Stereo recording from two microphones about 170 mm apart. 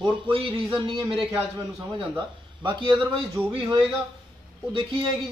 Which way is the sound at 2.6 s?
25° right (ahead or behind).